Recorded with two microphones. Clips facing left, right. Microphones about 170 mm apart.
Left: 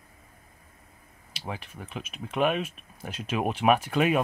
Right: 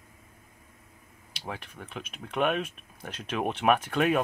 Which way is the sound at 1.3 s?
Centre (ahead or behind).